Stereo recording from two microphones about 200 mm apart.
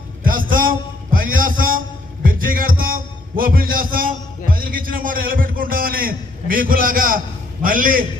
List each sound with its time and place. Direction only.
0.2 s a sound: 45° right (ahead or behind)
2.2 s music: 45° right (ahead or behind)
3.3 s a man's voice: 45° right (ahead or behind)